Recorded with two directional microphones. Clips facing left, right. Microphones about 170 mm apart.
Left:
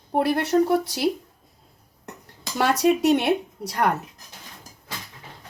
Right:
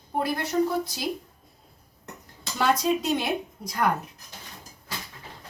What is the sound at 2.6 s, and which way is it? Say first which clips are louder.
Speech: left 4 dB; 70° left (ahead or behind).